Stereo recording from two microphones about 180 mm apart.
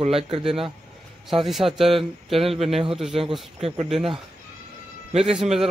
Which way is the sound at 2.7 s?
30° right (ahead or behind).